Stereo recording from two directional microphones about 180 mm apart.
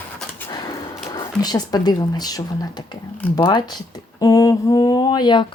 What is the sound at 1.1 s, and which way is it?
Speech, 20° left (ahead or behind).